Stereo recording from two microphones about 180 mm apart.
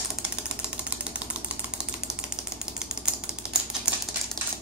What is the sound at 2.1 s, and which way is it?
Typewriter, 5° right (ahead or behind).